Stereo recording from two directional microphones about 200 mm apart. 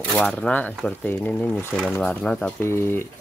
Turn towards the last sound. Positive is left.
turn(degrees=10)  # may be behind; listen again after turning